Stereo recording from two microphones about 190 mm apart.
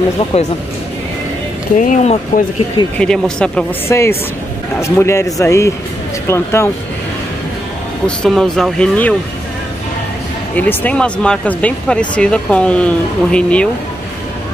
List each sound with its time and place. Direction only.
1.8 s speech: 40° left (ahead or behind)
3.0 s a man's voice: 5° left (ahead or behind)
8.2 s speech: centre (ahead or behind)
10.5 s speech: 10° left (ahead or behind)